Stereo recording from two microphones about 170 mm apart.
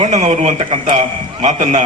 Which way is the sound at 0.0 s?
45° right (ahead or behind).